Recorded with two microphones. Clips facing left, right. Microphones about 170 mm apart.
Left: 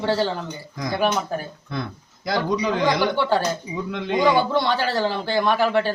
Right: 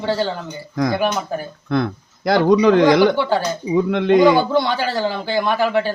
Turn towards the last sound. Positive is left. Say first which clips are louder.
# right 2 dB
turn(degrees=0)  # may be behind; listen again after turning